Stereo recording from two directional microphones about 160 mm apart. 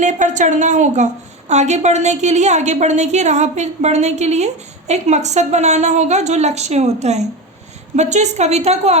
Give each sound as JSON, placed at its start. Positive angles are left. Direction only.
{"t": 0.0, "sound": "a woman's voice", "side_deg": -50}